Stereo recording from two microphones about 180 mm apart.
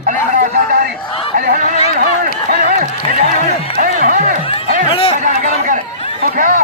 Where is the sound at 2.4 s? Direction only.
50° right (ahead or behind).